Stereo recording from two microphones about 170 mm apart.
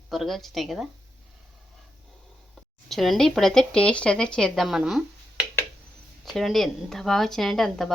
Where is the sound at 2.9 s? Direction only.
Centre (ahead or behind).